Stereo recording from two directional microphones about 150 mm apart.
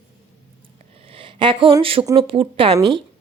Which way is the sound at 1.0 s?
35° right (ahead or behind).